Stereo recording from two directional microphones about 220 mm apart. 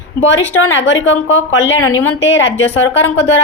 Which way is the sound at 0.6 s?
60° left (ahead or behind).